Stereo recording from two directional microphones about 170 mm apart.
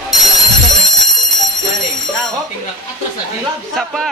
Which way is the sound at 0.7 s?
Centre (ahead or behind).